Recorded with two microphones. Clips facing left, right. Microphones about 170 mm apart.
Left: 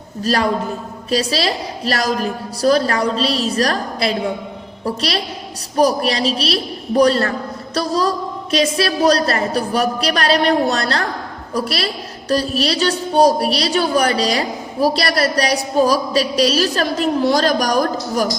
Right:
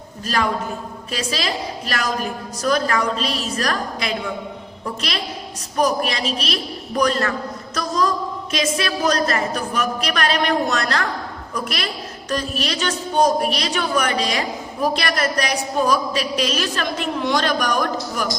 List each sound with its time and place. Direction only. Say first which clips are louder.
0.2 s a woman's voice: left 4 dB; 35° left (ahead or behind)